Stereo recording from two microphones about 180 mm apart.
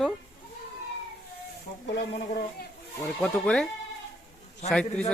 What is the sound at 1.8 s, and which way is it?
Speech, 70° left (ahead or behind).